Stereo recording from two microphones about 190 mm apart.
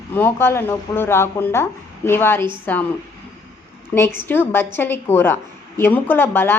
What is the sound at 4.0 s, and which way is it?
Speech, 10° left (ahead or behind).